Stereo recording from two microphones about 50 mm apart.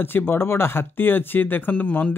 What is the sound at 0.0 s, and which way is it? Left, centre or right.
Speech, left.